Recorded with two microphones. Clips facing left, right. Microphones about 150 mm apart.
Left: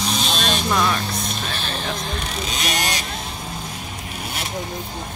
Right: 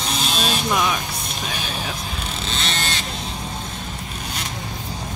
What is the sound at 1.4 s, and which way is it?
Music, 10° right (ahead or behind).